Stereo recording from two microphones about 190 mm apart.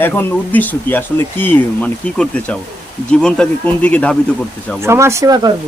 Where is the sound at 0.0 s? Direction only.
10° left (ahead or behind).